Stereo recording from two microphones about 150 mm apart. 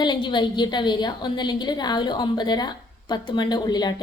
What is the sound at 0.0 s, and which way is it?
A woman's voice, 30° left (ahead or behind).